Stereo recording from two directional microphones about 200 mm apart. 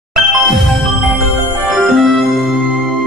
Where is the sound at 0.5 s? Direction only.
Centre (ahead or behind).